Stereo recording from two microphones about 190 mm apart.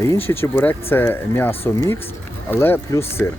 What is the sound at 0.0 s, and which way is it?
Speech, 15° left (ahead or behind).